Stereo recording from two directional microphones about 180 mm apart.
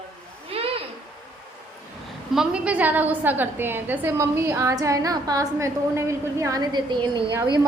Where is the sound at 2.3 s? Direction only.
5° right (ahead or behind); by 7.2 s 25° right (ahead or behind).